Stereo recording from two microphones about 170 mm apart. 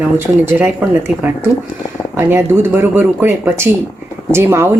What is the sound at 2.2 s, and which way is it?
Speech, 15° right (ahead or behind).